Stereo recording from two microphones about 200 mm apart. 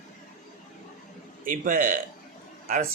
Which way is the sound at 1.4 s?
40° right (ahead or behind).